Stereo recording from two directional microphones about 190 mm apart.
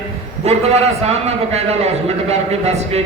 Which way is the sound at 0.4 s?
35° right (ahead or behind).